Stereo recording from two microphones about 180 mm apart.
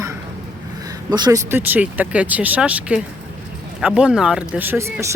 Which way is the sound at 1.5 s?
10° right (ahead or behind).